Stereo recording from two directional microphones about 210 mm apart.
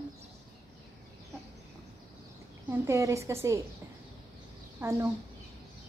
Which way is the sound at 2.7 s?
15° right (ahead or behind).